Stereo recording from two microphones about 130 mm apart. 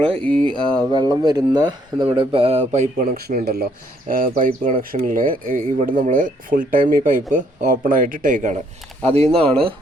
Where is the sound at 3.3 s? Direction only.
90° right.